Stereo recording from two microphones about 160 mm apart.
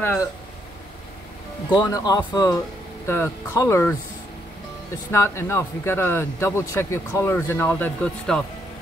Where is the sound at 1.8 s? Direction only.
20° left (ahead or behind).